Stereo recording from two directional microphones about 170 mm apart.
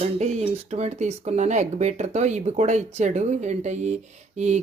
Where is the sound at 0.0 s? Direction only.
40° right (ahead or behind).